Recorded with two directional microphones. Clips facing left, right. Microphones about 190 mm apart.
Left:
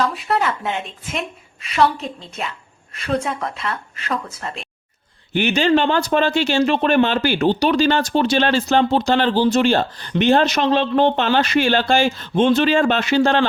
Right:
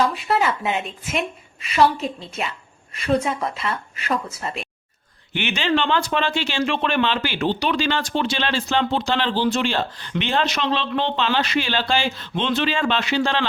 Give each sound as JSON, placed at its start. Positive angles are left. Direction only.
{"t": 0.1, "sound": "speech", "side_deg": 0}
{"t": 5.3, "sound": "speech", "side_deg": 40}